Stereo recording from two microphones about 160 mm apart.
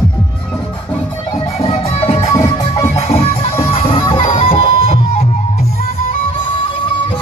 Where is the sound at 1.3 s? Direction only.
40° left (ahead or behind).